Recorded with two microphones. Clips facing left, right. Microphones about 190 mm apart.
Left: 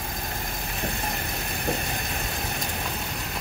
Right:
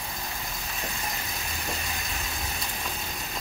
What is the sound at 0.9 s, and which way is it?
Vehicle, 60° left (ahead or behind).